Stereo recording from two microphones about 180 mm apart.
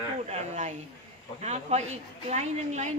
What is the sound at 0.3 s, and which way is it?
A woman's voice, 40° right (ahead or behind).